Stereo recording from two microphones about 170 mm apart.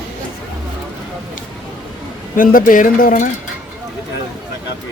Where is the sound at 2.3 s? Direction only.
55° left (ahead or behind).